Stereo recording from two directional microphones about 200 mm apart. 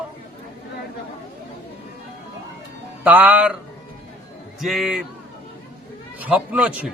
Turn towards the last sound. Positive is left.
turn(degrees=-5)  # may be behind; listen again after turning